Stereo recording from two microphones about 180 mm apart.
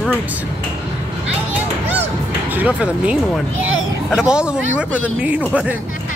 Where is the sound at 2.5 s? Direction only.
10° right (ahead or behind).